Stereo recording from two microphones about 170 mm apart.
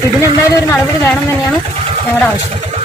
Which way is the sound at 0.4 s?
15° left (ahead or behind).